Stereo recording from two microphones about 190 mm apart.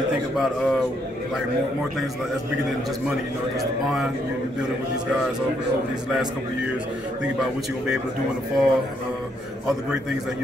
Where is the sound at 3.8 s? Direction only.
Centre (ahead or behind).